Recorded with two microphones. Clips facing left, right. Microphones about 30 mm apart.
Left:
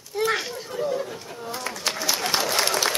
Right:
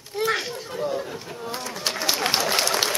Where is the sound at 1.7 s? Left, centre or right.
Centre.